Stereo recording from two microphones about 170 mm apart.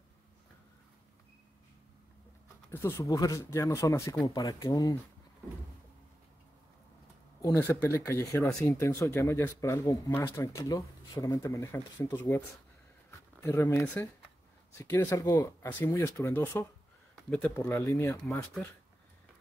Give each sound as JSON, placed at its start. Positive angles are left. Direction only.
{"t": 2.7, "sound": "speech", "side_deg": 15}
{"t": 7.4, "sound": "speech", "side_deg": 15}
{"t": 17.1, "sound": "a sound", "side_deg": 5}
{"t": 17.6, "sound": "speech", "side_deg": 20}